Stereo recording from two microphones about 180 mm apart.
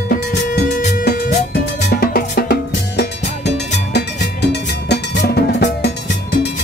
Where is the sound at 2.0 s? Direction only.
55° left (ahead or behind).